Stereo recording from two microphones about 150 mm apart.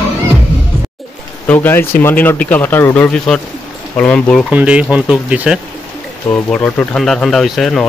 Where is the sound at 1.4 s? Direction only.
10° left (ahead or behind).